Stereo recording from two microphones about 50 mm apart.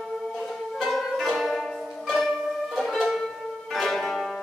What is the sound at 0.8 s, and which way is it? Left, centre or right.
Music, centre.